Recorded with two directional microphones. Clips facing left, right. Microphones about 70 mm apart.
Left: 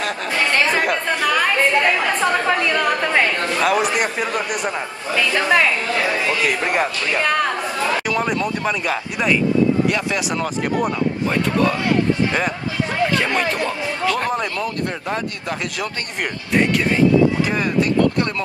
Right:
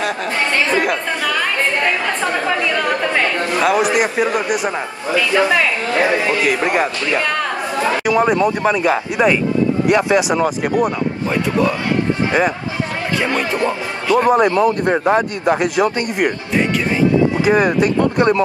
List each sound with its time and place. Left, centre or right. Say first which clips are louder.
0.7 s a man's voice: right 2 dB; centre
3.6 s a man's voice: right 3 dB; centre
6.6 s a man's voice: right 3 dB; centre; by 10.2 s right
10.3 s speech: right 5 dB; centre
14.4 s a man's voice: right 10 dB; right
17.5 s a man's voice: right 6 dB; right